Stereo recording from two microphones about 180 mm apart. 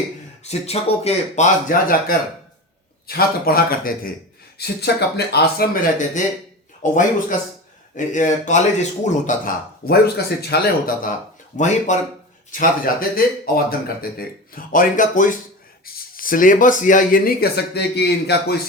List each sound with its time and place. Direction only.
0.4 s speech: 35° left (ahead or behind); by 4.1 s 55° left (ahead or behind)
4.5 s speech: 65° left (ahead or behind)
11.5 s speech: 45° left (ahead or behind); by 18.6 s 65° left (ahead or behind)